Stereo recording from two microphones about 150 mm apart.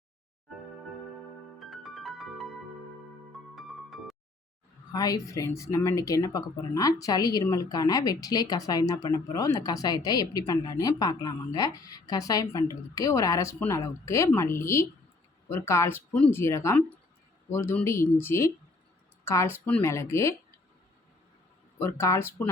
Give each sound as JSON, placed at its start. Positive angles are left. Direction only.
{"t": 1.5, "sound": "music", "side_deg": 0}
{"t": 3.5, "sound": "music", "side_deg": 0}
{"t": 4.9, "sound": "speech", "side_deg": 25}
{"t": 21.8, "sound": "speech", "side_deg": 15}